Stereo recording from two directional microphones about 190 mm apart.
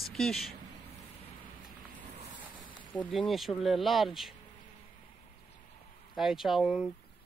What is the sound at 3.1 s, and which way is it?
Speech, centre (ahead or behind).